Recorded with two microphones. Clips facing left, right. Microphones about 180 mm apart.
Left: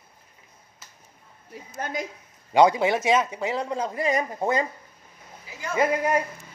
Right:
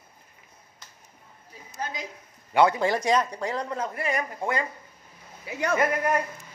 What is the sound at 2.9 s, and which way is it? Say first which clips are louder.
Speech: left 2 dB; 5° left (ahead or behind).